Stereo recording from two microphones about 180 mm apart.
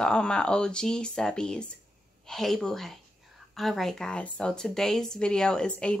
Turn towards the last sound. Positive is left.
turn(degrees=5)  # may be behind; listen again after turning